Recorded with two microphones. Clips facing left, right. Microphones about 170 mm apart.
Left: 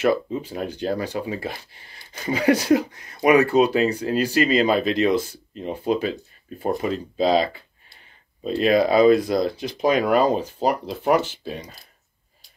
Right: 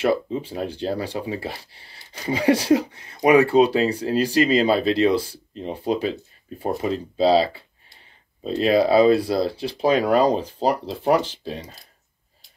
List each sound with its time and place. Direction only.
0.0 s speech: 30° right (ahead or behind)